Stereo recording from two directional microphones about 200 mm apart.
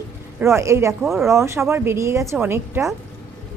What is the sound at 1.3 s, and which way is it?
A woman's voice, 15° right (ahead or behind).